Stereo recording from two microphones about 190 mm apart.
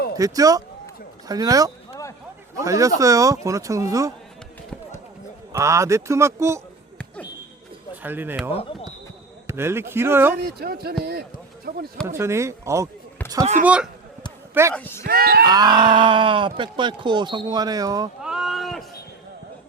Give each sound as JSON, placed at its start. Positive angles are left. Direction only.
{"t": 0.2, "sound": "speech", "side_deg": -20}
{"t": 1.9, "sound": "a sound", "side_deg": 15}
{"t": 2.6, "sound": "speech", "side_deg": -15}
{"t": 5.5, "sound": "speech", "side_deg": -15}
{"t": 8.0, "sound": "speech", "side_deg": -10}
{"t": 9.5, "sound": "speech", "side_deg": -15}
{"t": 10.4, "sound": "speech", "side_deg": -55}
{"t": 12.0, "sound": "speech", "side_deg": -15}
{"t": 13.4, "sound": "speech", "side_deg": -40}
{"t": 14.7, "sound": "speech", "side_deg": 10}
{"t": 15.0, "sound": "speech", "side_deg": -55}
{"t": 15.4, "sound": "speech", "side_deg": -20}
{"t": 18.2, "sound": "a sound", "side_deg": -5}